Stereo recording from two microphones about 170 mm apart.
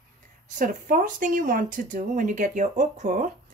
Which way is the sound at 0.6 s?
50° right (ahead or behind).